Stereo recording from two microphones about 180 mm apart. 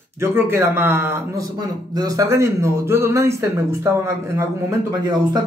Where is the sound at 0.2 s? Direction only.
15° right (ahead or behind).